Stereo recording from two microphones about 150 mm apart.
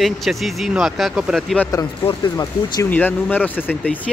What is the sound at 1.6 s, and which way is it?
Speech, 15° left (ahead or behind).